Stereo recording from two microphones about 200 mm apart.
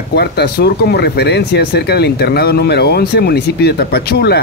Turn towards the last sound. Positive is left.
turn(degrees=55)  # may be behind; listen again after turning